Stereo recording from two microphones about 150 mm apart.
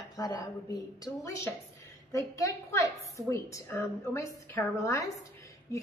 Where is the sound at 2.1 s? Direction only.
20° left (ahead or behind).